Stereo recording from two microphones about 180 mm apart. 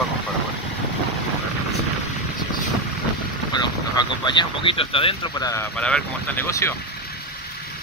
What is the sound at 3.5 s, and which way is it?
Speech, 25° left (ahead or behind).